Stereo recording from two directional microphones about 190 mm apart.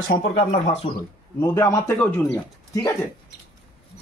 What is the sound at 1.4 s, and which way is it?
A man's voice, 15° left (ahead or behind).